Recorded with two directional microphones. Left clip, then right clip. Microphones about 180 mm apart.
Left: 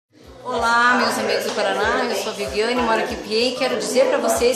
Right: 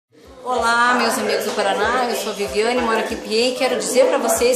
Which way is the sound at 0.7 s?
10° right (ahead or behind).